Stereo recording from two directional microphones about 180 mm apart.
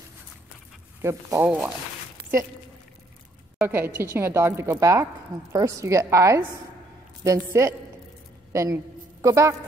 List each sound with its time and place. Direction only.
1.0 s a woman's voice: 10° right (ahead or behind)
3.6 s a woman's voice: 10° right (ahead or behind)